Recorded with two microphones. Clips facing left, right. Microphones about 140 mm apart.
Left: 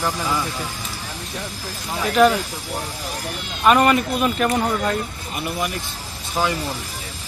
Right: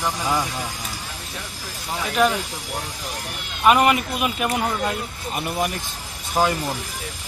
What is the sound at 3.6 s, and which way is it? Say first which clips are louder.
Speech: left 1 dB; 10° right (ahead or behind).